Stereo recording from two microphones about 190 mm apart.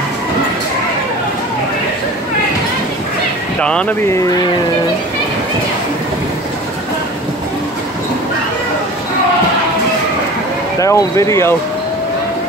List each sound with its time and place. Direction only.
3.6 s speech: 5° left (ahead or behind)
10.8 s speech: 15° left (ahead or behind)